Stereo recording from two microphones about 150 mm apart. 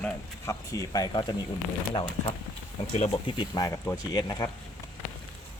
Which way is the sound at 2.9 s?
50° left (ahead or behind).